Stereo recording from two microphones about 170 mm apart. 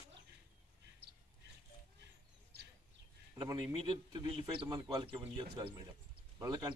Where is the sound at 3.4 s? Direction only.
25° right (ahead or behind).